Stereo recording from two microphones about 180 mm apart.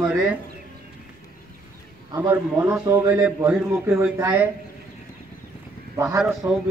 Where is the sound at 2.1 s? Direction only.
10° right (ahead or behind).